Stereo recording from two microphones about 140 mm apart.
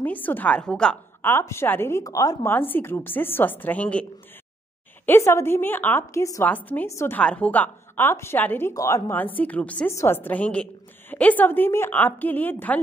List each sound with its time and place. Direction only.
0.0 s a woman's voice: 10° left (ahead or behind)